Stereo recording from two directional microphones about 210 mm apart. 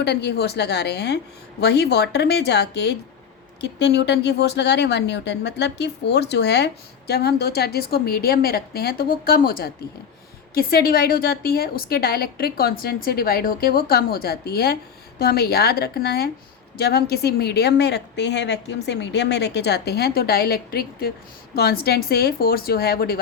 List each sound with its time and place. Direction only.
0.0 s a woman's voice: 50° left (ahead or behind)